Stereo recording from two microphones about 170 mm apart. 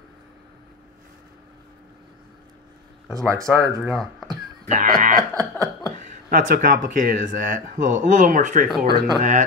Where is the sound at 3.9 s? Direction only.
Centre (ahead or behind).